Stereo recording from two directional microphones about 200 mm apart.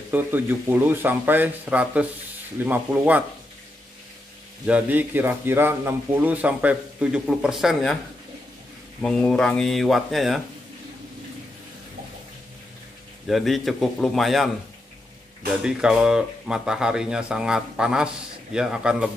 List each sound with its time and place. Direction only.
0.1 s a man's voice: 10° right (ahead or behind)
4.6 s a man's voice: 5° right (ahead or behind)
9.0 s speech: 5° left (ahead or behind)
13.3 s speech: centre (ahead or behind)
15.6 s speech: 5° right (ahead or behind)